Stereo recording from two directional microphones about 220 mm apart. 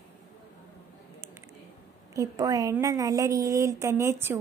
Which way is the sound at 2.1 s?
15° right (ahead or behind).